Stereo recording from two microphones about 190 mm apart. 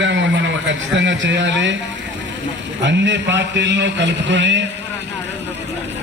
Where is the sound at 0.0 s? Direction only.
70° right (ahead or behind).